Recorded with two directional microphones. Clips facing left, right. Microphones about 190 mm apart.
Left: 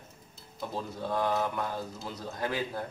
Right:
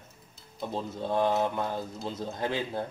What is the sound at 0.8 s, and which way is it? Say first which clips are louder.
A man's voice: right 4 dB; 25° right (ahead or behind).